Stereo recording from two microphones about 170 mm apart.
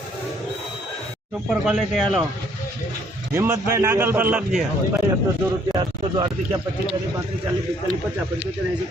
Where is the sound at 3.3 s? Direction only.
15° right (ahead or behind).